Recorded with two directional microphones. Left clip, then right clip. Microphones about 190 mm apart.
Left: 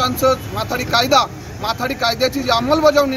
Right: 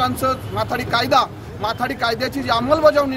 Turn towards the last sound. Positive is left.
turn(degrees=-10)  # may be behind; listen again after turning